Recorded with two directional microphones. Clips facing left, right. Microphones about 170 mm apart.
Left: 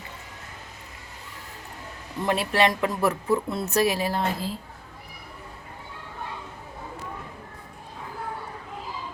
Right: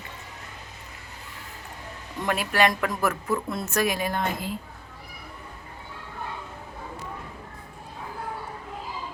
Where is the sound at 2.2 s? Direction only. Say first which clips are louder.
Left 1 dB; 25° left (ahead or behind).